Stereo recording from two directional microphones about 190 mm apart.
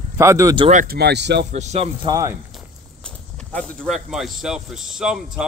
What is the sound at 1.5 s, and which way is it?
Speech, 35° right (ahead or behind).